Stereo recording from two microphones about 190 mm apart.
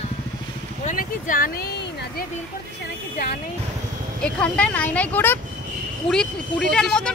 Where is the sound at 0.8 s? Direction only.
45° left (ahead or behind).